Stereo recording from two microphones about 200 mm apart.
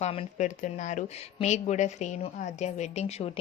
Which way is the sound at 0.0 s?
30° left (ahead or behind).